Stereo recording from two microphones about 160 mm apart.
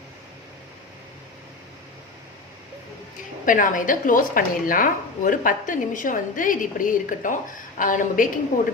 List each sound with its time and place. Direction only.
3.4 s a woman's voice: 55° left (ahead or behind)